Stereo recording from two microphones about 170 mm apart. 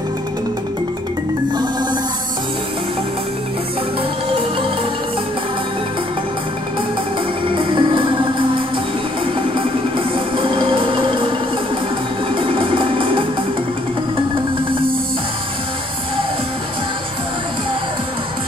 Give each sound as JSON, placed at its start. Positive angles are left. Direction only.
{"t": 7.5, "sound": "music", "side_deg": -30}
{"t": 12.4, "sound": "music", "side_deg": -30}